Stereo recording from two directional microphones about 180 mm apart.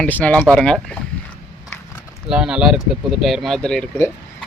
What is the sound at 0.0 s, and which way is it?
Speech, 10° left (ahead or behind).